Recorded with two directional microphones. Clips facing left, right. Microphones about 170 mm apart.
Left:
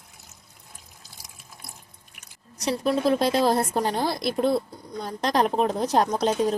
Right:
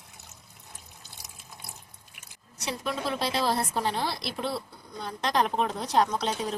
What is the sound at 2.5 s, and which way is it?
A woman's voice, 35° left (ahead or behind).